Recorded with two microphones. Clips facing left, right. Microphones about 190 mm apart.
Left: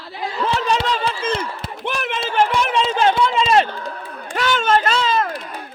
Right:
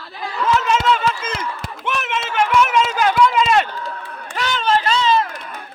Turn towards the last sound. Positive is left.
turn(degrees=35)  # may be behind; listen again after turning